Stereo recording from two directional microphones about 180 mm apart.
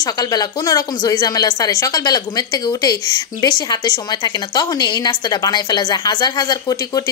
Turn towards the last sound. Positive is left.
turn(degrees=20)  # may be behind; listen again after turning